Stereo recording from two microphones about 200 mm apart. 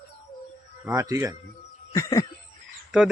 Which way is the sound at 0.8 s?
15° right (ahead or behind).